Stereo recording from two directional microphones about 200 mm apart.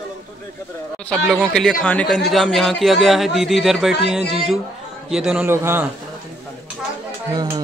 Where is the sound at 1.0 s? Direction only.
Centre (ahead or behind).